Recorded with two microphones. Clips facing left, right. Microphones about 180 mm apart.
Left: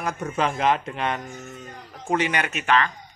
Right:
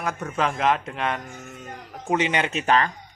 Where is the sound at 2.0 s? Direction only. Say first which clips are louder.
Right 1 dB; 20° right (ahead or behind).